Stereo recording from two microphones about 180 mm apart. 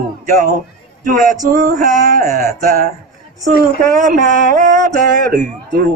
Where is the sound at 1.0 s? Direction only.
50° right (ahead or behind).